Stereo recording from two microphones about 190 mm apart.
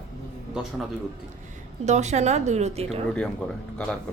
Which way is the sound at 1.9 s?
35° right (ahead or behind).